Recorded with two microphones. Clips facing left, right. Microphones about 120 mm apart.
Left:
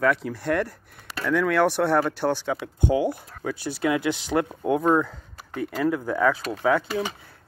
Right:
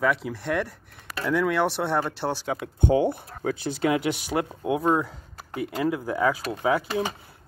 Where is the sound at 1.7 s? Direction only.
20° right (ahead or behind).